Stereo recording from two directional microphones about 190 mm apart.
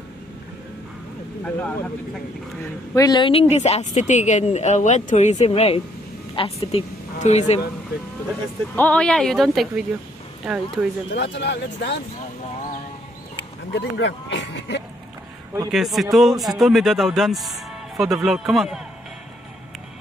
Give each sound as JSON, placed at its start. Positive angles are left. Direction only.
{"t": 1.4, "sound": "speech", "side_deg": 5}
{"t": 2.9, "sound": "a woman's voice", "side_deg": 20}
{"t": 7.9, "sound": "speech", "side_deg": 55}
{"t": 8.7, "sound": "speech", "side_deg": 5}
{"t": 11.1, "sound": "speech", "side_deg": 65}
{"t": 13.7, "sound": "speech", "side_deg": 65}
{"t": 15.7, "sound": "speech", "side_deg": 0}